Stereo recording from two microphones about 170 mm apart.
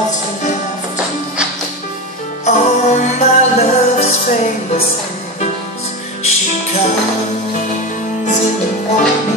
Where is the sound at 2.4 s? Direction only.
45° left (ahead or behind).